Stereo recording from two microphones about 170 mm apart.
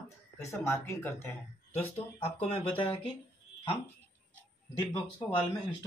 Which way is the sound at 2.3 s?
30° left (ahead or behind).